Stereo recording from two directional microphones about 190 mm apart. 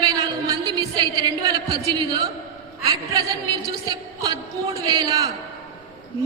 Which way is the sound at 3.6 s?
20° right (ahead or behind).